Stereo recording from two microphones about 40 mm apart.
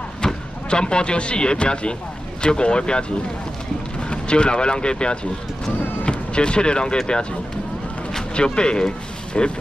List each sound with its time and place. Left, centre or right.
0.2 s speech: left
4.1 s speech: left
8.4 s speech: left